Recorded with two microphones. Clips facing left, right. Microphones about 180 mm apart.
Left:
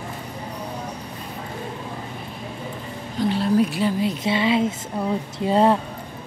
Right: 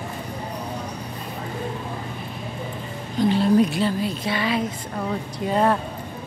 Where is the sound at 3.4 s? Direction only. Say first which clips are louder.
Even; 5° left (ahead or behind); by 5.7 s 25° left (ahead or behind).